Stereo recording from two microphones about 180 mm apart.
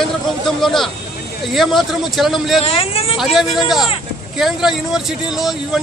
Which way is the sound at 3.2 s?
Centre (ahead or behind).